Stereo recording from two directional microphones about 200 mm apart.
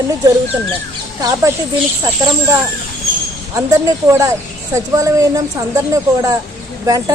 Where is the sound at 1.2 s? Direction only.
15° right (ahead or behind).